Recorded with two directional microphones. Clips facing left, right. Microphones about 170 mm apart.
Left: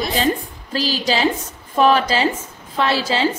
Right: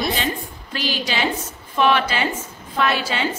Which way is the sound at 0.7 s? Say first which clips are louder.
Left 4 dB; 35° left (ahead or behind).